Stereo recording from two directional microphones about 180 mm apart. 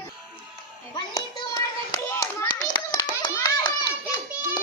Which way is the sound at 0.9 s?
20° left (ahead or behind).